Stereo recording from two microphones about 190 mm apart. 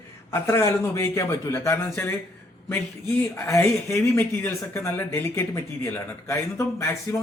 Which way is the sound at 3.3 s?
15° left (ahead or behind).